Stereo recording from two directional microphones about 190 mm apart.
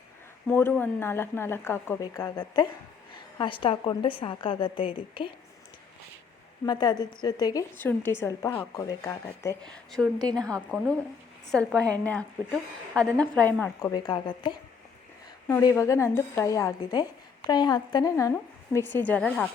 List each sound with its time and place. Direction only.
0.4 s a woman's voice: 10° left (ahead or behind); by 5.3 s 25° left (ahead or behind)
6.7 s a woman's voice: 20° left (ahead or behind)
9.6 s a woman's voice: 5° left (ahead or behind)
13.9 s a woman's voice: 20° left (ahead or behind)
15.4 s a woman's voice: 10° left (ahead or behind)